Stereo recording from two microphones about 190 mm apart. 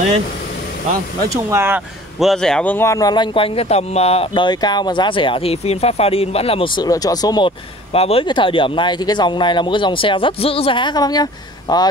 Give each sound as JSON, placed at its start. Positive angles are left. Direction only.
{"t": 1.3, "sound": "speech", "side_deg": -15}
{"t": 2.1, "sound": "speech", "side_deg": 0}